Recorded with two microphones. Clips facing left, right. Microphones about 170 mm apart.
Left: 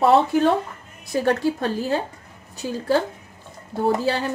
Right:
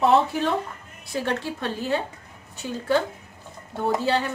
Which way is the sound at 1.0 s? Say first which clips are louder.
Left 7 dB; 40° left (ahead or behind).